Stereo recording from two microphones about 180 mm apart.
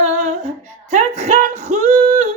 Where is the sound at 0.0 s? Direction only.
40° right (ahead or behind).